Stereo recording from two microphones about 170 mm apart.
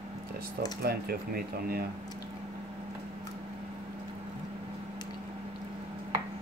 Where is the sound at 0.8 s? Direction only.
65° right (ahead or behind).